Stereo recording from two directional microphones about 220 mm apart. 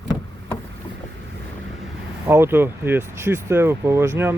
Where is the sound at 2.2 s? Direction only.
10° right (ahead or behind).